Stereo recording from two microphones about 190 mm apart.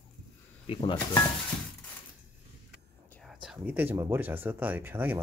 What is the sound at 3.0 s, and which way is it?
Speech, 5° left (ahead or behind).